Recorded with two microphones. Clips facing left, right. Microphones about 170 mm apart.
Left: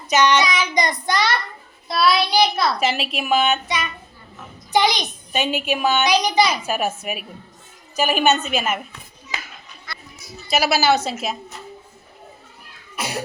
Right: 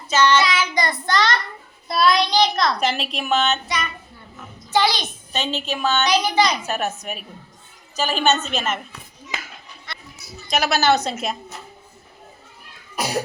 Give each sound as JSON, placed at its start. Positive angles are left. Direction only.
{"t": 0.1, "sound": "a child's voice", "side_deg": 15}
{"t": 10.5, "sound": "a child's voice", "side_deg": 5}